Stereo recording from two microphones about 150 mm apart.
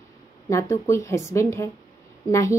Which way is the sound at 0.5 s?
20° left (ahead or behind).